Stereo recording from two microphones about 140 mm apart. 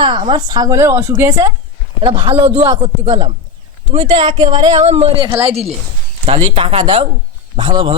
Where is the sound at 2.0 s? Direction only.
40° right (ahead or behind).